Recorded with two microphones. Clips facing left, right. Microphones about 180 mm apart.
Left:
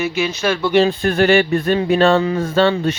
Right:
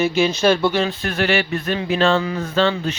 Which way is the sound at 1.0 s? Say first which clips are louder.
Left 6 dB; 40° left (ahead or behind).